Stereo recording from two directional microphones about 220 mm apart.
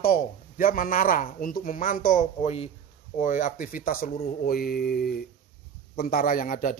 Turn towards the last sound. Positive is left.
turn(degrees=35)  # may be behind; listen again after turning